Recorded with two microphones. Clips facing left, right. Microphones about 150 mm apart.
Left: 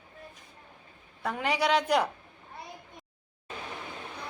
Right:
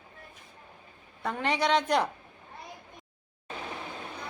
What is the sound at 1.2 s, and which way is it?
Speech, 5° left (ahead or behind).